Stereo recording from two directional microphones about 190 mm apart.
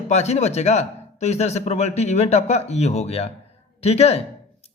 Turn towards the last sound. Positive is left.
turn(degrees=35)  # may be behind; listen again after turning